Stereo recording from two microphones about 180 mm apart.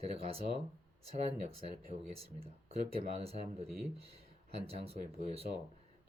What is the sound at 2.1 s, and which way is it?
Speech, 35° right (ahead or behind).